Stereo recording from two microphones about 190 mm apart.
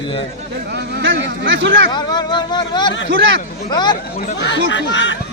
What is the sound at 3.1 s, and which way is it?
Speech, 80° right.